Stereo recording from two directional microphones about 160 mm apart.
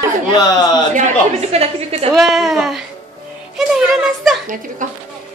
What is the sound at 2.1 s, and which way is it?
A woman's voice, centre (ahead or behind).